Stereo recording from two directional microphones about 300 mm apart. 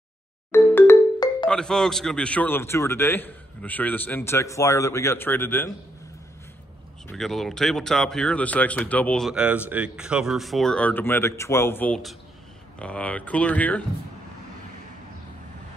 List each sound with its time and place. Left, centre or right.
0.5 s music: centre
1.5 s a man's voice: centre
7.1 s speech: centre